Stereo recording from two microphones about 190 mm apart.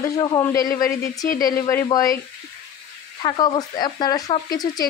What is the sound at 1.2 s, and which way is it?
Speech, 50° left (ahead or behind).